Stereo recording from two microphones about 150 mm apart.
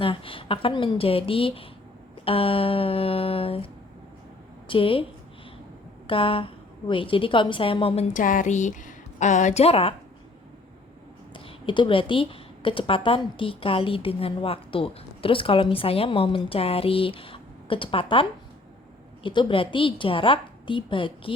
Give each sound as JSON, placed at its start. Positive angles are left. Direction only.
{"t": 0.0, "sound": "a woman's voice", "side_deg": 35}
{"t": 4.7, "sound": "a woman's voice", "side_deg": 35}
{"t": 6.1, "sound": "a woman's voice", "side_deg": 35}
{"t": 8.1, "sound": "a woman's voice", "side_deg": 60}
{"t": 11.3, "sound": "a woman's voice", "side_deg": 35}